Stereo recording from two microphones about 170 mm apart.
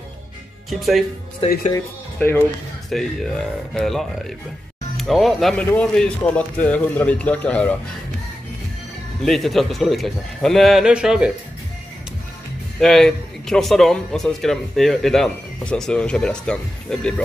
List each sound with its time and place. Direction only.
0.7 s speech: centre (ahead or behind)
1.4 s speech: 35° left (ahead or behind)
2.1 s a man's voice: 10° left (ahead or behind)
9.2 s speech: centre (ahead or behind)
12.8 s speech: centre (ahead or behind)